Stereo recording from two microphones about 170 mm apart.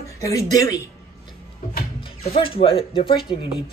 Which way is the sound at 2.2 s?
35° left (ahead or behind).